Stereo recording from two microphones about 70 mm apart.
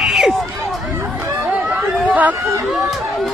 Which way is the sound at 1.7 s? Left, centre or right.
Centre.